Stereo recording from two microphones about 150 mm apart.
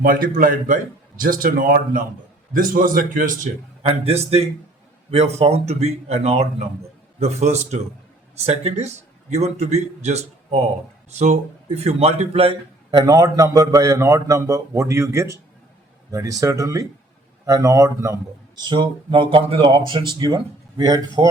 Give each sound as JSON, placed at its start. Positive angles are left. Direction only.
{"t": 0.0, "sound": "a man's voice", "side_deg": -70}
{"t": 3.8, "sound": "a man's voice", "side_deg": -40}